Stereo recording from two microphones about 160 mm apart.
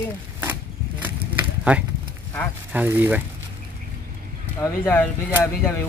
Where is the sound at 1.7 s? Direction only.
5° right (ahead or behind).